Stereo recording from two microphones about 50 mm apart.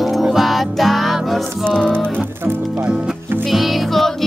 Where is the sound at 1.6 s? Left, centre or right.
Centre.